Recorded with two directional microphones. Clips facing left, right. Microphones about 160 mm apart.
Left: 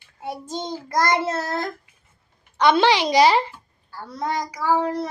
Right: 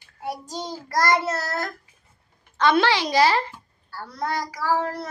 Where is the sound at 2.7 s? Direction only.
15° left (ahead or behind).